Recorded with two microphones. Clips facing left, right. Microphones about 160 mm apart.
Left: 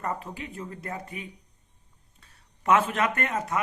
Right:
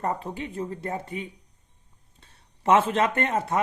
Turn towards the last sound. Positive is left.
turn(degrees=-30)  # may be behind; listen again after turning